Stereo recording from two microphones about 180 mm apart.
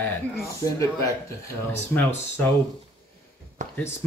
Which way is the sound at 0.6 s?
20° left (ahead or behind).